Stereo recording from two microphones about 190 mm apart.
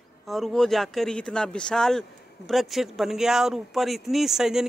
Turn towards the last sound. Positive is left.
turn(degrees=0)  # may be behind; listen again after turning